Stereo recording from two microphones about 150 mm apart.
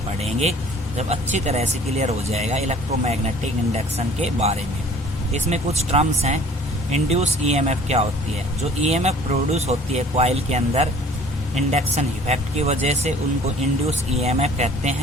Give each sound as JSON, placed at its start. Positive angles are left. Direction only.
{"t": 0.2, "sound": "speech", "side_deg": -45}